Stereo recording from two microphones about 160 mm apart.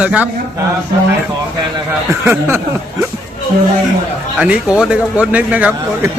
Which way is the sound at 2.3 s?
15° right (ahead or behind).